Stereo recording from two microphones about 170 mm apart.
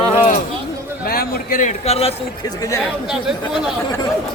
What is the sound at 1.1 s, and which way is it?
A man's voice, 60° left (ahead or behind).